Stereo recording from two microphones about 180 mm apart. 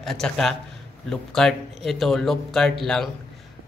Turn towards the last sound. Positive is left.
turn(degrees=0)  # may be behind; listen again after turning